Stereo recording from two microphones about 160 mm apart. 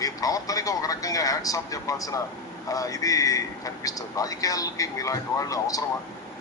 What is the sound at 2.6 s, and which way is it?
A man's voice, 20° left (ahead or behind).